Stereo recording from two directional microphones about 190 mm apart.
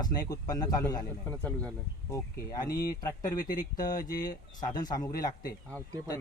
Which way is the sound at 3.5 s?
45° left (ahead or behind).